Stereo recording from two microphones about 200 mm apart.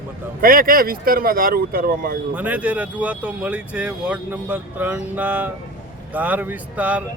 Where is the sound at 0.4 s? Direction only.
45° right (ahead or behind).